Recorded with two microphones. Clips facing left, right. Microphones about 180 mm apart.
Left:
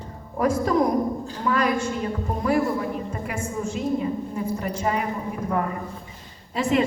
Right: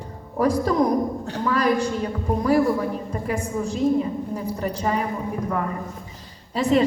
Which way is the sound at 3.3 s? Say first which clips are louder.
Right 5 dB; 35° right (ahead or behind).